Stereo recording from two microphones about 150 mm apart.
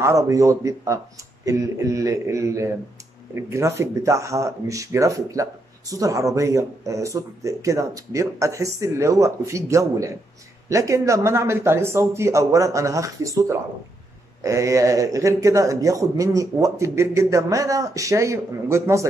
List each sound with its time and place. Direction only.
0.0 s a man's voice: 20° right (ahead or behind)